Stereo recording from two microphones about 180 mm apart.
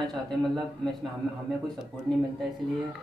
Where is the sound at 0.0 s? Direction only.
Centre (ahead or behind).